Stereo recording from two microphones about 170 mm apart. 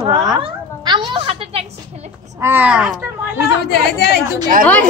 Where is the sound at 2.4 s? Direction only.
10° right (ahead or behind).